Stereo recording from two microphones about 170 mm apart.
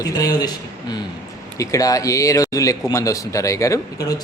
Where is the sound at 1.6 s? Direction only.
20° left (ahead or behind).